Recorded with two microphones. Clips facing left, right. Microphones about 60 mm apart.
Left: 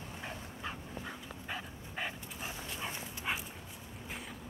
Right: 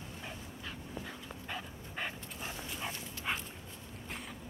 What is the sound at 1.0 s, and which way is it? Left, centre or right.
Dog, centre.